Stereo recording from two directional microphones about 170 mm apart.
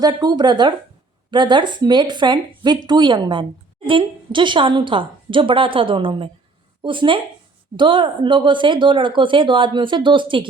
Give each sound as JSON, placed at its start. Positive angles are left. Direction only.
{"t": 0.0, "sound": "a woman's voice", "side_deg": -25}